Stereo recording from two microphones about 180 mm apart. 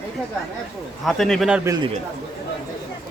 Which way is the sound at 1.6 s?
20° right (ahead or behind).